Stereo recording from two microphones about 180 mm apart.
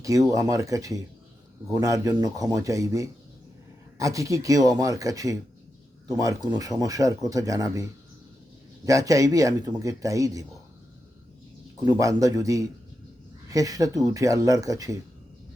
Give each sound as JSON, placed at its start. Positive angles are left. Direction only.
{"t": 0.0, "sound": "speech", "side_deg": -20}
{"t": 11.9, "sound": "speech", "side_deg": -20}